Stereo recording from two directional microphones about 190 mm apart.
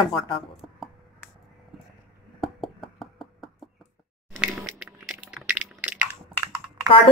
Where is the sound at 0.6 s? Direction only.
5° right (ahead or behind).